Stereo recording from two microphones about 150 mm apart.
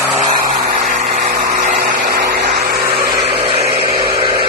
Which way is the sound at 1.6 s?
90° right.